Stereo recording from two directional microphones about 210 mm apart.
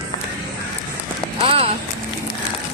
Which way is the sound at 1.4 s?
25° right (ahead or behind).